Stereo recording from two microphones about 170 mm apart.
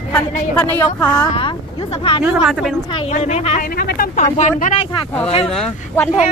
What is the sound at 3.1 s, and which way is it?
Speech, 40° left (ahead or behind).